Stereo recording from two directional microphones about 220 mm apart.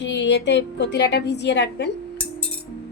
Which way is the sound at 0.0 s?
55° left (ahead or behind).